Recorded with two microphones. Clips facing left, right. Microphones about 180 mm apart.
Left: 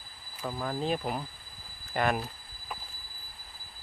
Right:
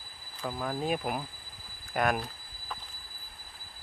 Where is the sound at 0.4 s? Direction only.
Centre (ahead or behind).